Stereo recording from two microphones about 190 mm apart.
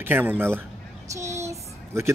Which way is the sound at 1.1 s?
15° right (ahead or behind).